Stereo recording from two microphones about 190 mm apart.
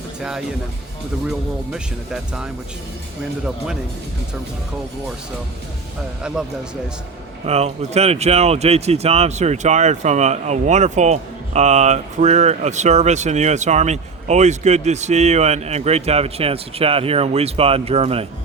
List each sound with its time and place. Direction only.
0.2 s speech: 5° right (ahead or behind)
6.3 s speech: 5° right (ahead or behind)
7.4 s speech: 35° right (ahead or behind)